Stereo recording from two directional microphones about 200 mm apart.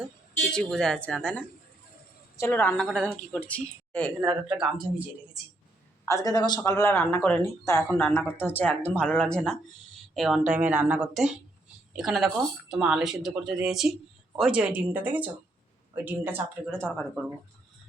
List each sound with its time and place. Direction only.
0.5 s a woman's voice: 5° left (ahead or behind)
6.1 s a man's voice: 15° left (ahead or behind); by 16.6 s 10° right (ahead or behind)
16.6 s a woman's voice: 5° left (ahead or behind)